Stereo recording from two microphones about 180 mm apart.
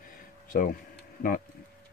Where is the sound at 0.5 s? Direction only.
55° left (ahead or behind).